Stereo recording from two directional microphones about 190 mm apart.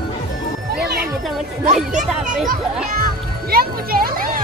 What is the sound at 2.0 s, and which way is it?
A child's voice, 45° right (ahead or behind).